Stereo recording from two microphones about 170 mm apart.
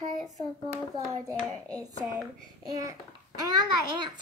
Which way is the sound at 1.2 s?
20° right (ahead or behind).